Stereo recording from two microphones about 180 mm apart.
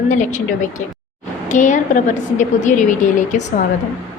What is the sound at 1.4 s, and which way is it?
A woman's voice, 45° left (ahead or behind).